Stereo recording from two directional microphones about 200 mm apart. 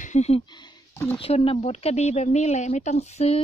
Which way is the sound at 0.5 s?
20° left (ahead or behind).